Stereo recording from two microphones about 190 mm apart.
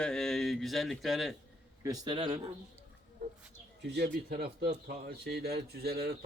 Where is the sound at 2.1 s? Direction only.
30° right (ahead or behind).